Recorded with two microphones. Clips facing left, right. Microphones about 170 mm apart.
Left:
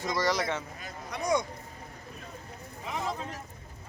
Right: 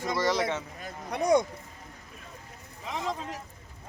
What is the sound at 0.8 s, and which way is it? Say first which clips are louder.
Speech: right 5 dB; 60° right (ahead or behind).